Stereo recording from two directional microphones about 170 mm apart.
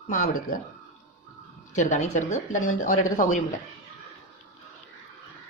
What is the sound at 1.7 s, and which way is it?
Speech, 45° left (ahead or behind).